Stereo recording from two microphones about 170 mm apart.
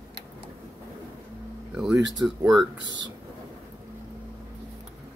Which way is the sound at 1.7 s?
5° right (ahead or behind).